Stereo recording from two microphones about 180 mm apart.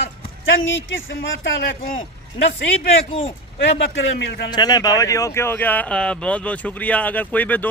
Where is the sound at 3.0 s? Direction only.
35° left (ahead or behind).